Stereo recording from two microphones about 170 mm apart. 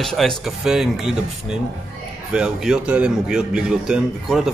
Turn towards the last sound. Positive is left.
turn(degrees=0)  # may be behind; listen again after turning